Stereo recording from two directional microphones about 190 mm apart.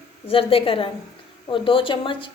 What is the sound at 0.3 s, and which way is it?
A woman's voice, 30° left (ahead or behind).